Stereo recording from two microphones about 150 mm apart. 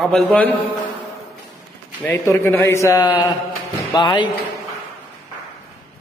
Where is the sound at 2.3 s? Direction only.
20° left (ahead or behind).